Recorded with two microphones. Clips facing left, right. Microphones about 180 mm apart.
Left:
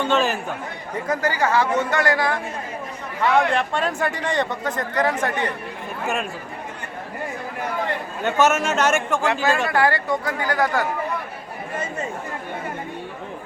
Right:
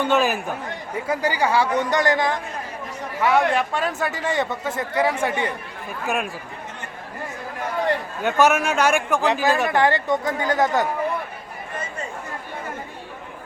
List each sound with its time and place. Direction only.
0.0 s a man's voice: 10° right (ahead or behind)
3.2 s a man's voice: 5° right (ahead or behind)
8.4 s a man's voice: 10° right (ahead or behind)
9.1 s speech: 15° right (ahead or behind)